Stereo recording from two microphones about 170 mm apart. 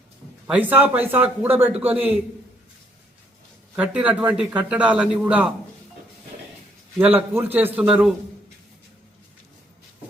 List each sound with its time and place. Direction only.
0.4 s a man's voice: 10° right (ahead or behind)
3.8 s a man's voice: 5° right (ahead or behind)
7.0 s a man's voice: 10° right (ahead or behind)